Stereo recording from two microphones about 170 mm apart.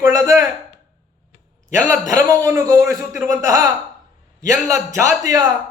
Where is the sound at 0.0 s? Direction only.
20° right (ahead or behind).